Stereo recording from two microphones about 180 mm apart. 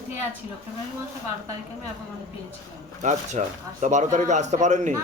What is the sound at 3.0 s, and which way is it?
Speech, 40° right (ahead or behind).